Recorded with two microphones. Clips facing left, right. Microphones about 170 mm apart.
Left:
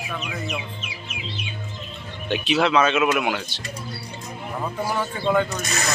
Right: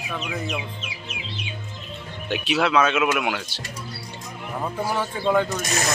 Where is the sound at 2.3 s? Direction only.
5° right (ahead or behind).